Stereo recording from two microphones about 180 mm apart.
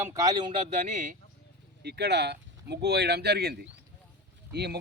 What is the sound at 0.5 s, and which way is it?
Speech, 40° right (ahead or behind).